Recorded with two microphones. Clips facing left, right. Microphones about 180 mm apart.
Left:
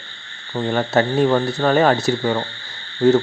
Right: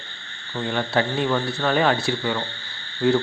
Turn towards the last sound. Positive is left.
turn(degrees=40)  # may be behind; listen again after turning